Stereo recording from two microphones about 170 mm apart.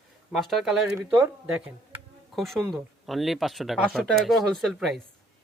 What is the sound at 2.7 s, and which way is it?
Speech, centre (ahead or behind).